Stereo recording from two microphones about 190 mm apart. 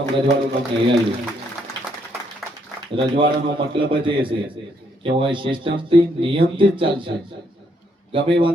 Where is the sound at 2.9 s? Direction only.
25° right (ahead or behind).